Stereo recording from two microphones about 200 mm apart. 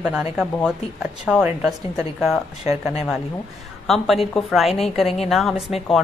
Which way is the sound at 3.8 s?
Centre (ahead or behind).